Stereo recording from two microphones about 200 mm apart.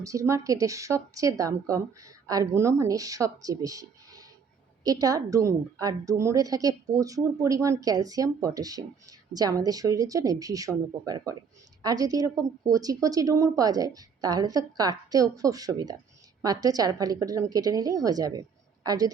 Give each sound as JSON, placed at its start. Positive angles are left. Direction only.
{"t": 0.0, "sound": "a woman's voice", "side_deg": -15}